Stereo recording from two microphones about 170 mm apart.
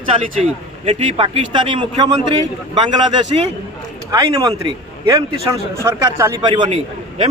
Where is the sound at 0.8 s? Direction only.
35° right (ahead or behind).